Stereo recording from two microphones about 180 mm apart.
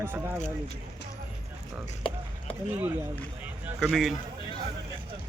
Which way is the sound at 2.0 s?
30° left (ahead or behind).